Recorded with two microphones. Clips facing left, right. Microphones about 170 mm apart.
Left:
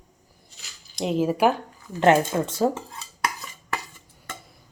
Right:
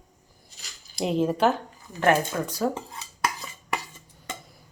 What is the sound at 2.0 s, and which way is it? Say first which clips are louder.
Speech: left 4 dB; 25° left (ahead or behind).